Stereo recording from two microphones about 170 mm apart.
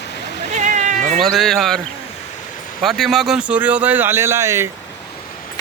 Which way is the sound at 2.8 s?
Centre (ahead or behind).